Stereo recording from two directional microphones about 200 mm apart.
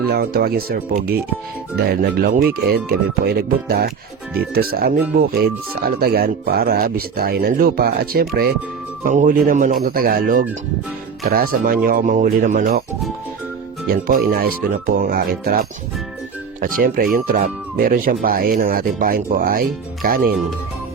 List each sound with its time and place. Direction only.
0.0 s speech: 50° right (ahead or behind)
13.9 s speech: 45° right (ahead or behind)